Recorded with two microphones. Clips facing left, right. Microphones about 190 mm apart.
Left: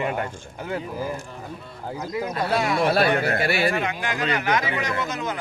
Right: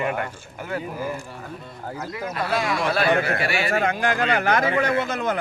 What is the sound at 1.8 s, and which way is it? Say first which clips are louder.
Speech: left 3 dB; 15° left (ahead or behind).